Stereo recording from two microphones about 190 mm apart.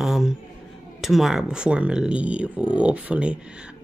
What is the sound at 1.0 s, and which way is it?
Speech, centre (ahead or behind).